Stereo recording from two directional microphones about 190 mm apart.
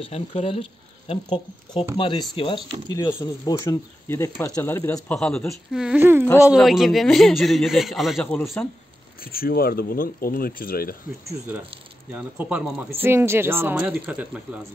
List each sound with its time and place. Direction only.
0.0 s a man's voice: 30° left (ahead or behind); by 8.6 s 5° left (ahead or behind)
9.2 s speech: 50° left (ahead or behind)
12.1 s speech: 5° right (ahead or behind)